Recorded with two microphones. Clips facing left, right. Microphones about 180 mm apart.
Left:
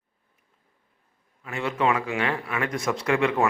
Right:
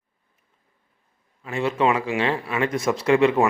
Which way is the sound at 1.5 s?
25° right (ahead or behind).